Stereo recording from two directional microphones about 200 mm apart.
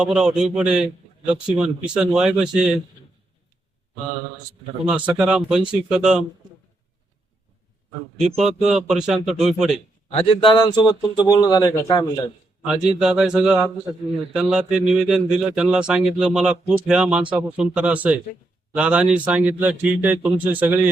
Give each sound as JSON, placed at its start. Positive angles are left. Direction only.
{"t": 0.0, "sound": "a man's voice", "side_deg": -5}
{"t": 4.9, "sound": "a man's voice", "side_deg": -5}
{"t": 8.7, "sound": "a man's voice", "side_deg": 0}
{"t": 10.1, "sound": "speech", "side_deg": 25}
{"t": 12.6, "sound": "a man's voice", "side_deg": -5}